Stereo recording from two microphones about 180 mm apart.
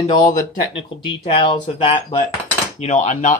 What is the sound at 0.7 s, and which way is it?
Speech, 30° left (ahead or behind).